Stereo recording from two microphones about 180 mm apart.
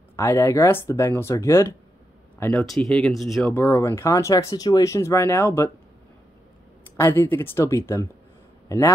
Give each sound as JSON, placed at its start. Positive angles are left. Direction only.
{"t": 0.1, "sound": "speech", "side_deg": 15}
{"t": 2.6, "sound": "speech", "side_deg": 0}
{"t": 7.0, "sound": "a man's voice", "side_deg": 10}